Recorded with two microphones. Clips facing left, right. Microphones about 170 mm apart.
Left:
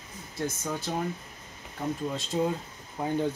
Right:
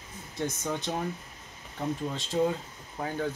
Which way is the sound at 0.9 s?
Centre (ahead or behind).